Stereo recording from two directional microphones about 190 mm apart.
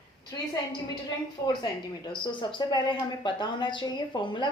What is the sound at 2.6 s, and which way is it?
A woman's voice, 20° left (ahead or behind).